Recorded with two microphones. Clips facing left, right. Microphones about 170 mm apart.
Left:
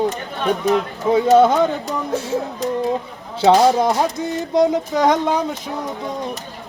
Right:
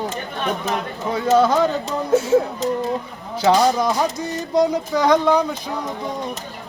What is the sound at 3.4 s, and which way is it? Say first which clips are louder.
Speech: left 3 dB; 25° left (ahead or behind).